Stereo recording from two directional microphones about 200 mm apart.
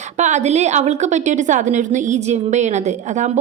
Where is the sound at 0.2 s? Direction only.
35° right (ahead or behind).